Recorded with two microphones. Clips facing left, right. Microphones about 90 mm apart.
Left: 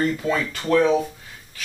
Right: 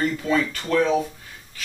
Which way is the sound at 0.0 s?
10° left (ahead or behind).